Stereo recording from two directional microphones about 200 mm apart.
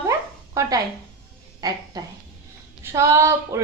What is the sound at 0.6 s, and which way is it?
A woman's voice, 15° right (ahead or behind).